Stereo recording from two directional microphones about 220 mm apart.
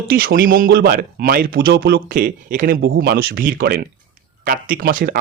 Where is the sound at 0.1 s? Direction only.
45° right (ahead or behind).